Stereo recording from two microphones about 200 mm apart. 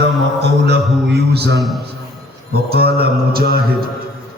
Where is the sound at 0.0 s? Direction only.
60° right (ahead or behind).